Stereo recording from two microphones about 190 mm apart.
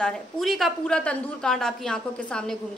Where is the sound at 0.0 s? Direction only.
Centre (ahead or behind).